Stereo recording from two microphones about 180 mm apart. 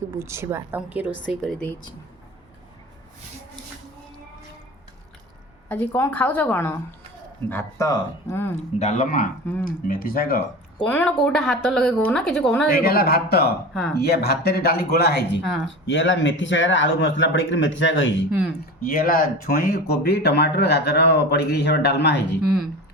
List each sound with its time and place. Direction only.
0.1 s speech: 15° right (ahead or behind)
1.3 s a woman's voice: centre (ahead or behind)
5.6 s a woman's voice: 10° left (ahead or behind)
8.5 s speech: 40° left (ahead or behind)
10.8 s a woman's voice: 10° left (ahead or behind)
12.7 s speech: 55° left (ahead or behind)
15.9 s a man's voice: 90° left
18.9 s speech: 55° left (ahead or behind); by 22.4 s 70° left (ahead or behind)